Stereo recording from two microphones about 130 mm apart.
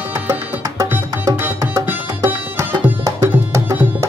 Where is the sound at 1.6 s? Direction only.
25° right (ahead or behind).